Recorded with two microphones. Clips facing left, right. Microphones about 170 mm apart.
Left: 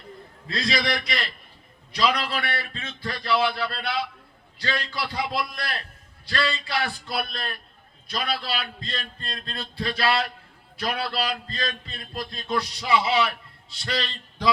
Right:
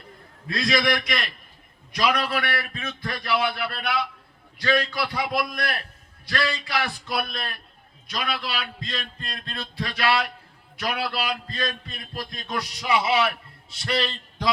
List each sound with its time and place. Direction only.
0.4 s a man's voice: 30° left (ahead or behind)